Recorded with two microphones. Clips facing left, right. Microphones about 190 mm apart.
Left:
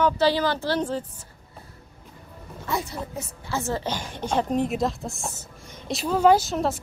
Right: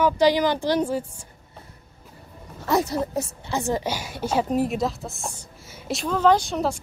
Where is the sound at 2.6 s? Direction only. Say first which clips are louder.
Right 7 dB; 40° right (ahead or behind).